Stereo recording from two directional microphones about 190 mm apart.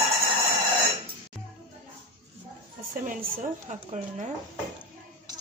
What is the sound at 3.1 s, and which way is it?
A woman's voice, 40° right (ahead or behind).